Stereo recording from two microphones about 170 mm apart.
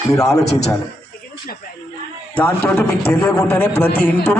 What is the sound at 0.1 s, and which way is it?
Speech, 20° left (ahead or behind).